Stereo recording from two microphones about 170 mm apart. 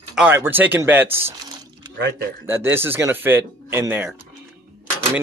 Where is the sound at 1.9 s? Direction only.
75° right (ahead or behind).